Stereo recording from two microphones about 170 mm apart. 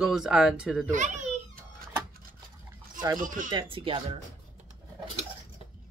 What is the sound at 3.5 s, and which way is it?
Speech, 30° right (ahead or behind).